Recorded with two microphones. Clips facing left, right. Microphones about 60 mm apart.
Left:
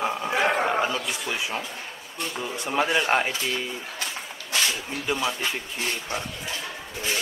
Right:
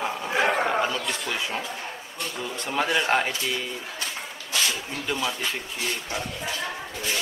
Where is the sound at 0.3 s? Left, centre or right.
Centre.